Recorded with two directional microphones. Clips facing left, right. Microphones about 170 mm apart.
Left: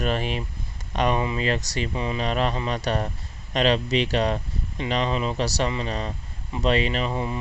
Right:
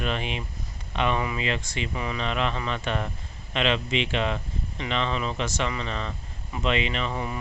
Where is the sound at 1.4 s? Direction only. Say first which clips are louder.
Left 4 dB; 40° left (ahead or behind).